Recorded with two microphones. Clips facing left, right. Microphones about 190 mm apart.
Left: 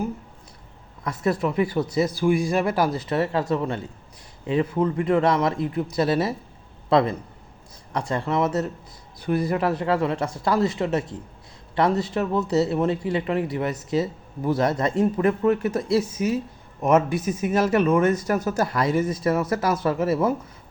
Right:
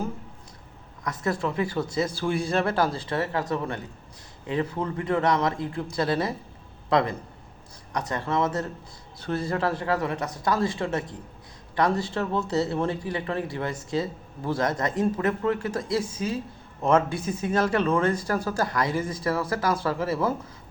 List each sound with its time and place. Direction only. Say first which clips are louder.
1.0 s speech: left 4 dB; 25° left (ahead or behind)
7.9 s speech: left 3 dB; 25° left (ahead or behind)
17.1 s speech: left 5 dB; 25° right (ahead or behind)
17.4 s speech: left 3 dB; 20° left (ahead or behind)